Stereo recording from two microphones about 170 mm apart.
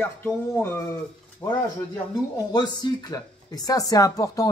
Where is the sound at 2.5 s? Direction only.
25° left (ahead or behind).